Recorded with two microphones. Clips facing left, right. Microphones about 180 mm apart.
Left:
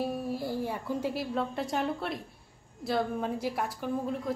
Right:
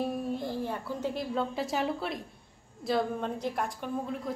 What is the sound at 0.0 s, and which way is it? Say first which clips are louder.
A woman's voice: even; 5° left (ahead or behind).